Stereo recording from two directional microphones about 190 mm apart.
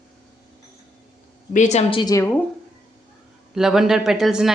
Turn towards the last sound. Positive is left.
turn(degrees=0)  # may be behind; listen again after turning